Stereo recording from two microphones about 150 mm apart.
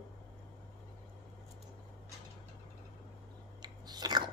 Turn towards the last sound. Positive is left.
turn(degrees=-30)  # may be behind; listen again after turning